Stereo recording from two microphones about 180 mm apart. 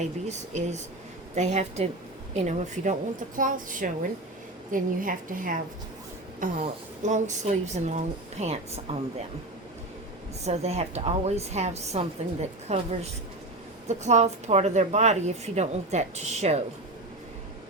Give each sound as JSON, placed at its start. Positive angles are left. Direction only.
{"t": 0.0, "sound": "a woman's voice", "side_deg": -40}
{"t": 10.4, "sound": "speech", "side_deg": -35}